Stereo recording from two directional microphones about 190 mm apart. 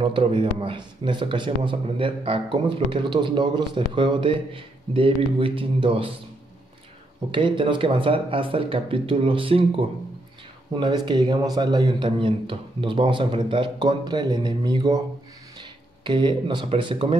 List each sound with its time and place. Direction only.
0.0 s a man's voice: 25° right (ahead or behind)
7.2 s a man's voice: 25° right (ahead or behind)
16.0 s a man's voice: 25° right (ahead or behind)